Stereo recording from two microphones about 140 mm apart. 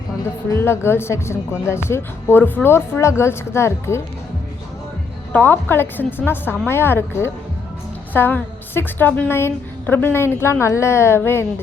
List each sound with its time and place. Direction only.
0.5 s a woman's voice: 20° left (ahead or behind)
5.3 s a woman's voice: 15° left (ahead or behind)